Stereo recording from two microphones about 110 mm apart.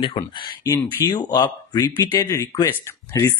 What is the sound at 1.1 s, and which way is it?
Speech, 40° left (ahead or behind).